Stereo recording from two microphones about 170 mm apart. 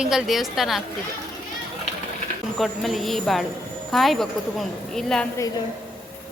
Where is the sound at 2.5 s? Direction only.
Centre (ahead or behind).